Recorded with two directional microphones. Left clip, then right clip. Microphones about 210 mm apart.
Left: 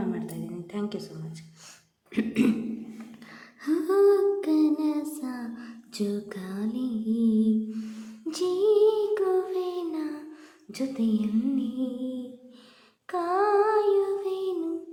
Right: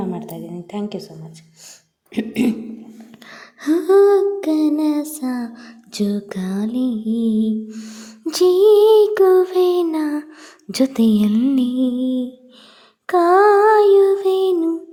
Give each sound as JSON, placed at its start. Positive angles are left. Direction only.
{"t": 0.3, "sound": "a sound", "side_deg": -25}
{"t": 2.1, "sound": "throat clearing", "side_deg": -15}
{"t": 3.3, "sound": "humming", "side_deg": -40}
{"t": 10.7, "sound": "a woman's voice", "side_deg": -45}
{"t": 13.1, "sound": "child singing", "side_deg": -45}